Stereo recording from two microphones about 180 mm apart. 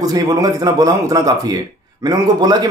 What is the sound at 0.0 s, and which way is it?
A man's voice, 20° right (ahead or behind).